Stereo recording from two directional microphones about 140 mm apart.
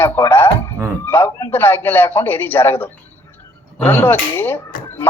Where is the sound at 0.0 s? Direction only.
15° left (ahead or behind).